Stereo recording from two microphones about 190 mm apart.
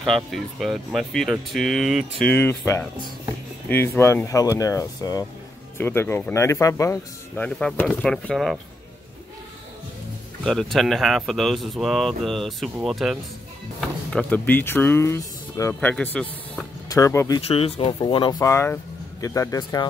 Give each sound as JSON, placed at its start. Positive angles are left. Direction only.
{"t": 0.0, "sound": "speech", "side_deg": 0}
{"t": 2.3, "sound": "speech", "side_deg": 15}
{"t": 10.4, "sound": "speech", "side_deg": 0}
{"t": 17.4, "sound": "speech", "side_deg": 30}